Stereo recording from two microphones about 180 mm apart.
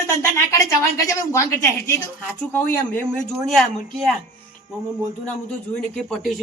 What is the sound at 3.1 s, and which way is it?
Speech, centre (ahead or behind).